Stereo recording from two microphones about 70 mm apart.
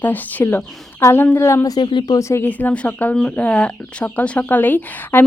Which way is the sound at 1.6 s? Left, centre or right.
Left.